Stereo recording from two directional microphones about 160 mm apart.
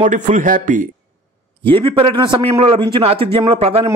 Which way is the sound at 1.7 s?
35° right (ahead or behind).